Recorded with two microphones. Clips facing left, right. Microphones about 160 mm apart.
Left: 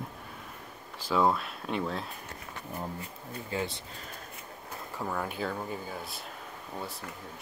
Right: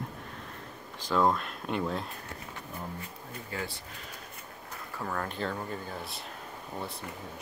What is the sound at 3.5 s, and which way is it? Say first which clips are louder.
Speech: left 4 dB; 20° left (ahead or behind).